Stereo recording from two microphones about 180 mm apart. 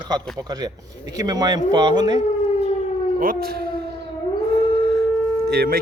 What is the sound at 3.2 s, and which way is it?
Speech, 55° right (ahead or behind).